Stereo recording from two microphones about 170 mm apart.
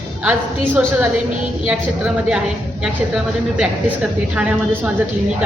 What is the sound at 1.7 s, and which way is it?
A woman's voice, 5° right (ahead or behind).